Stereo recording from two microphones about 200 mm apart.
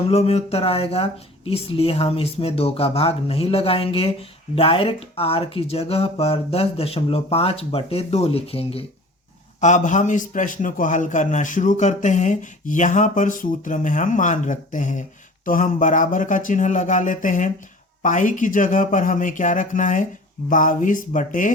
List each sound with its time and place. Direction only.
0.1 s a man's voice: 30° left (ahead or behind)